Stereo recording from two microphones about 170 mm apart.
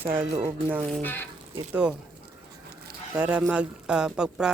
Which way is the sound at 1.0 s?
10° left (ahead or behind).